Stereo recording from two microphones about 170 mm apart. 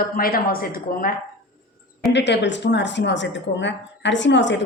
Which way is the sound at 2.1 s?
90° left.